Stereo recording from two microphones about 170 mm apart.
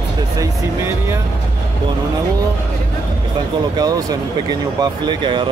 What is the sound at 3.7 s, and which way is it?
Speech, 25° right (ahead or behind).